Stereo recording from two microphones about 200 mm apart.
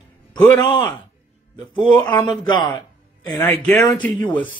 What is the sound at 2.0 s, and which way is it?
Speech, 20° left (ahead or behind).